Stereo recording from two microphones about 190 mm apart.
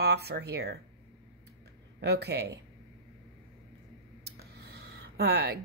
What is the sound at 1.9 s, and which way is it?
Speech, 60° right (ahead or behind).